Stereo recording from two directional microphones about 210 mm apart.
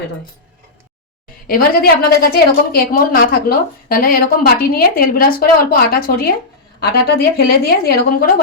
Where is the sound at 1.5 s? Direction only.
45° left (ahead or behind).